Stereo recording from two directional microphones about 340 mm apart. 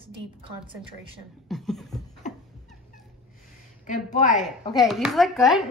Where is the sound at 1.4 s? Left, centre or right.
Centre.